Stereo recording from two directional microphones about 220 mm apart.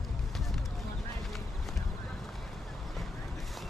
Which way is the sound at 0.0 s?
Centre (ahead or behind).